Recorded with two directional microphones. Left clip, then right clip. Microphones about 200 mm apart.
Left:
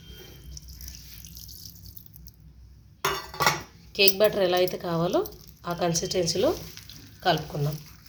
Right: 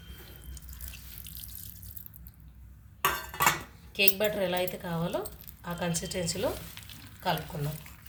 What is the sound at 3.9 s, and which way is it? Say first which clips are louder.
A woman's voice: left 6 dB; 35° left (ahead or behind).